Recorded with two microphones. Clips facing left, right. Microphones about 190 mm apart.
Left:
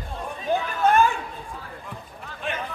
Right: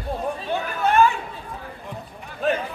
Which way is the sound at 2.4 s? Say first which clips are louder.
Right 9 dB; 40° right (ahead or behind).